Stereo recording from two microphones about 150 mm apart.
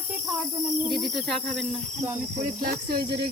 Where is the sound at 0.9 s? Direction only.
Centre (ahead or behind).